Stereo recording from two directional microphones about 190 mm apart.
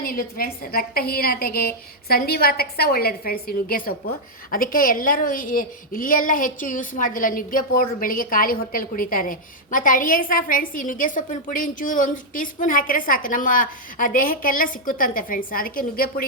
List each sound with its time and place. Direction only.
0.0 s a woman's voice: 50° left (ahead or behind)